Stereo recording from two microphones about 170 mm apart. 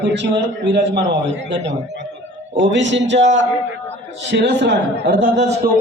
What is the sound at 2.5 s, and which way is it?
Speech, 90° right.